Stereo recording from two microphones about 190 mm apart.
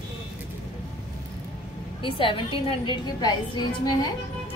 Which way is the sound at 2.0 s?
25° left (ahead or behind).